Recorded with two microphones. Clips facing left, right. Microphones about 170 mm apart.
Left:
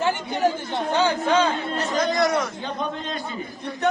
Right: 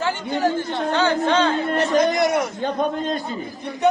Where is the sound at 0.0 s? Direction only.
20° left (ahead or behind).